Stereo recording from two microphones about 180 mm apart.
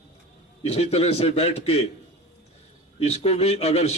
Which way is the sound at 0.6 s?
35° left (ahead or behind).